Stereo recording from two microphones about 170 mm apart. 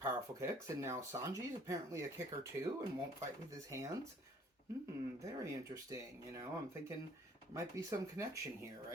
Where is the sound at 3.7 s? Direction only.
15° right (ahead or behind).